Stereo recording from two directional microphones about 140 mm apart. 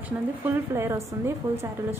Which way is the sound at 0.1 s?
10° right (ahead or behind).